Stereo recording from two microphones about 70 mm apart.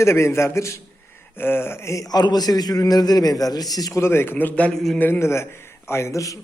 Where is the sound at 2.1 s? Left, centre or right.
Left.